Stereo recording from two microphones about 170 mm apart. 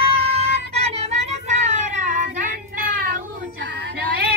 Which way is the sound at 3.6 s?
85° right.